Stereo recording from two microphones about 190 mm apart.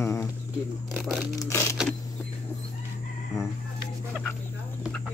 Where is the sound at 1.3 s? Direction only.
15° left (ahead or behind).